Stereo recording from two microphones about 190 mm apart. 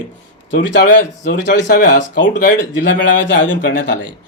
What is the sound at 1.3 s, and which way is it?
Speech, 45° left (ahead or behind).